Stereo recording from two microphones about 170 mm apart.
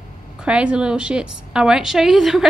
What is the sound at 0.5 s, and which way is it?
A woman's voice, 5° right (ahead or behind).